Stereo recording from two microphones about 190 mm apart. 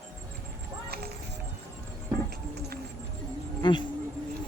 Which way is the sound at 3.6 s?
25° left (ahead or behind).